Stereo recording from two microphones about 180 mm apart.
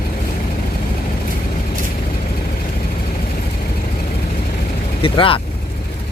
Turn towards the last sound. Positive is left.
turn(degrees=30)  # may be behind; listen again after turning